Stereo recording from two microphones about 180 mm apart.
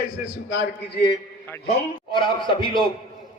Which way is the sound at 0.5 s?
90° left.